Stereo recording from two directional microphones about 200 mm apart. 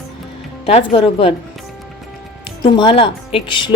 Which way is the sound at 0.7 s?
30° left (ahead or behind).